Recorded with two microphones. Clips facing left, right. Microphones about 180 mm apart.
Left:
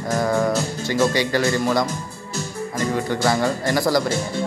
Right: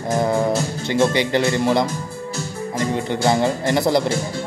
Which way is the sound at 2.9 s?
20° right (ahead or behind).